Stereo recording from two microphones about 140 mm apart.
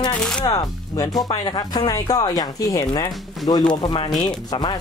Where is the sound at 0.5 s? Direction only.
25° left (ahead or behind).